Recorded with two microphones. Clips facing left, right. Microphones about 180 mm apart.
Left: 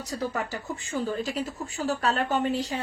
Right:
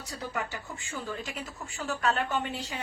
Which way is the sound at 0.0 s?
40° left (ahead or behind).